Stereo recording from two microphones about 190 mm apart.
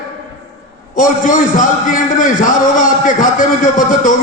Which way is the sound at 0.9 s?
45° left (ahead or behind).